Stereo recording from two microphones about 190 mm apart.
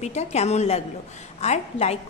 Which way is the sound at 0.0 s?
35° left (ahead or behind).